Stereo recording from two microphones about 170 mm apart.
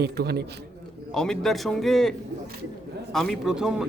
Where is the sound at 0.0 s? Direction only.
70° right (ahead or behind).